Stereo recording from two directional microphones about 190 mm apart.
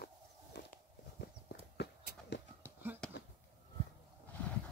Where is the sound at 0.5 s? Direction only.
65° left (ahead or behind).